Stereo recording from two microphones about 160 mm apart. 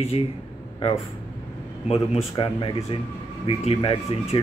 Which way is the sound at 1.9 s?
35° left (ahead or behind).